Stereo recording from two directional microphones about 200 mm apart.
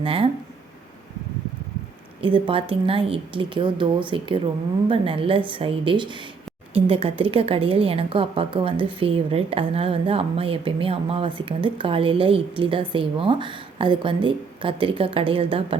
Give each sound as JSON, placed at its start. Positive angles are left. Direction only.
{"t": 0.0, "sound": "a woman's voice", "side_deg": -25}
{"t": 2.2, "sound": "a woman's voice", "side_deg": -25}